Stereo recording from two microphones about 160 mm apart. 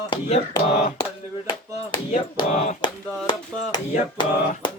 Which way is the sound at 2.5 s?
40° left (ahead or behind).